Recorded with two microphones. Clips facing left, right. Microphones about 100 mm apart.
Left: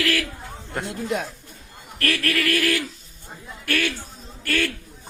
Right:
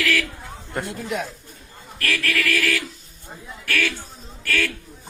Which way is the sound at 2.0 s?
30° left (ahead or behind).